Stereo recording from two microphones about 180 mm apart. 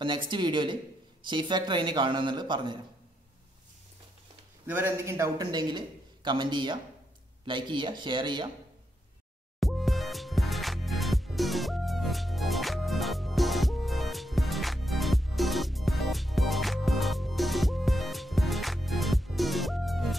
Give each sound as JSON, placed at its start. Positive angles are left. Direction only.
{"t": 0.0, "sound": "a man's voice", "side_deg": -25}
{"t": 4.6, "sound": "a man's voice", "side_deg": -10}
{"t": 9.6, "sound": "music", "side_deg": 0}